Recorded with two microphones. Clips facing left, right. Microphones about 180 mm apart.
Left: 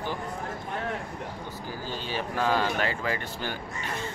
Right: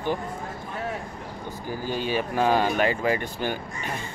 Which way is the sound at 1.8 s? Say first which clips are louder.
Right 7 dB; 15° right (ahead or behind).